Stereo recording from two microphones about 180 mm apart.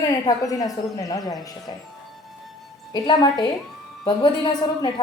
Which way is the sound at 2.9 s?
20° left (ahead or behind).